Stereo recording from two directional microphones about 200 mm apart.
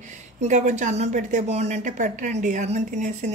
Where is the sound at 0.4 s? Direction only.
35° right (ahead or behind).